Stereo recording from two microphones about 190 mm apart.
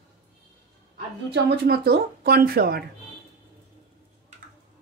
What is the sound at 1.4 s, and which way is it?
Speech, 55° right (ahead or behind).